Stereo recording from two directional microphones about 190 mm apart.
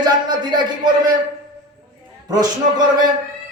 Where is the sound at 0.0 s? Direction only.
20° right (ahead or behind).